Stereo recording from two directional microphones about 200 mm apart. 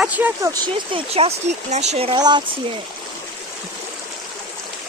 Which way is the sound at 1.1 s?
30° right (ahead or behind).